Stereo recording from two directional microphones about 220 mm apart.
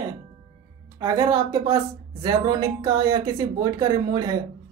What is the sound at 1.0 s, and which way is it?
Speech, 15° right (ahead or behind).